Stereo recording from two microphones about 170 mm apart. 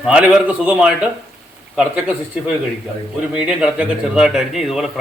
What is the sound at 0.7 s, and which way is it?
Speech, 5° right (ahead or behind).